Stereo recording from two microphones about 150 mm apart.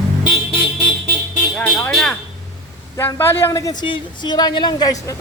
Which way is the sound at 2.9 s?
15° left (ahead or behind).